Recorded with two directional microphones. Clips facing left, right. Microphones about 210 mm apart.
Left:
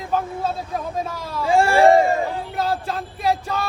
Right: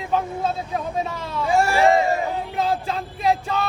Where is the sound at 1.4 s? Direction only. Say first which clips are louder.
Left 3 dB; 30° left (ahead or behind).